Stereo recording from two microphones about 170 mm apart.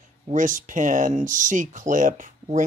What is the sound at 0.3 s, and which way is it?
Speech, 50° right (ahead or behind).